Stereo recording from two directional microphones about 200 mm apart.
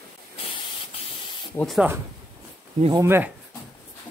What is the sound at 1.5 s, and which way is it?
Speech, centre (ahead or behind).